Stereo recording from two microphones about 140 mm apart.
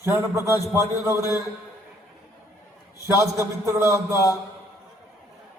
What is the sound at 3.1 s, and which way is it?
Speech, 20° right (ahead or behind).